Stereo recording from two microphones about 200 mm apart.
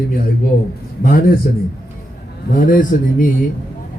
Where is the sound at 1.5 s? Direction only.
40° left (ahead or behind).